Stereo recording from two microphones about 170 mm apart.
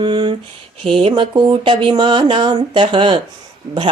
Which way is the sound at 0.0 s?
30° right (ahead or behind).